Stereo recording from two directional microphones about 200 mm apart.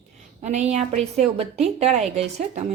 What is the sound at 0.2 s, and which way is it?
A woman's voice, 35° right (ahead or behind).